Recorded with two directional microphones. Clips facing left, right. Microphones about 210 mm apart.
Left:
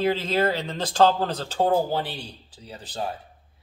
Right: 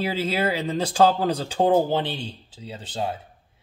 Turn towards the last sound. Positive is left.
turn(degrees=-25)  # may be behind; listen again after turning